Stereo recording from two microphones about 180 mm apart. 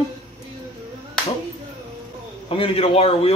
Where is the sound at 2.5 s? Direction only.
30° left (ahead or behind).